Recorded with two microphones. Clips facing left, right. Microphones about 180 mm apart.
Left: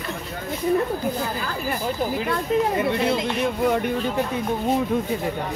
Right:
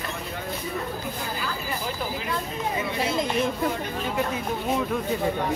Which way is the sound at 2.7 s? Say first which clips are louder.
Left 7 dB; 60° left (ahead or behind).